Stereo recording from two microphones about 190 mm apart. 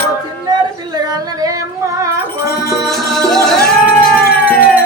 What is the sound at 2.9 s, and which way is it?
Music, centre (ahead or behind).